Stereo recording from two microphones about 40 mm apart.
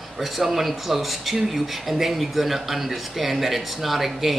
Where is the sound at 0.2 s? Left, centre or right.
Centre.